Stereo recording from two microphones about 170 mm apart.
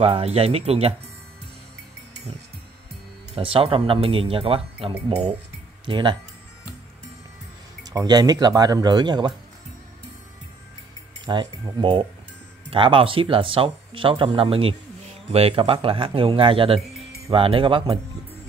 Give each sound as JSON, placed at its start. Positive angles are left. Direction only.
{"t": 0.0, "sound": "speech", "side_deg": -35}
{"t": 3.3, "sound": "speech", "side_deg": -30}
{"t": 7.8, "sound": "speech", "side_deg": -20}
{"t": 11.2, "sound": "speech", "side_deg": -30}